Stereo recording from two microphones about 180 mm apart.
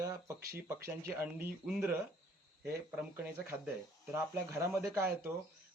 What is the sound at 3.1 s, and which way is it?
Speech, 10° right (ahead or behind).